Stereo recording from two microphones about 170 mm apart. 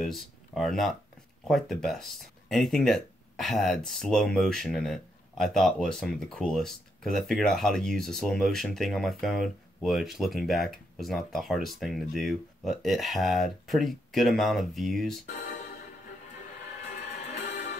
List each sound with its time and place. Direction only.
0.0 s speech: centre (ahead or behind)
17.3 s music: 40° left (ahead or behind)